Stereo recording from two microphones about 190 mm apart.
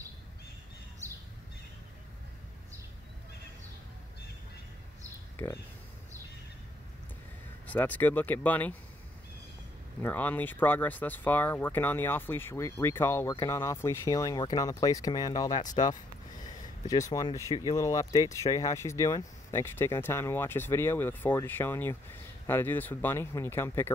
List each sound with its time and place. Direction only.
5.4 s speech: 10° left (ahead or behind)
7.6 s speech: 10° left (ahead or behind)
10.0 s speech: 10° left (ahead or behind)
17.1 s speech: 20° left (ahead or behind)